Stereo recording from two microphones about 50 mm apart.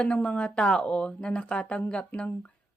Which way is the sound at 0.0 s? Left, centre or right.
Centre.